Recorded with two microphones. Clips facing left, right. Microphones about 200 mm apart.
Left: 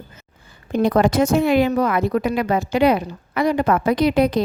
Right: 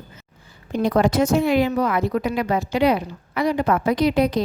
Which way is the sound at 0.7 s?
60° left (ahead or behind).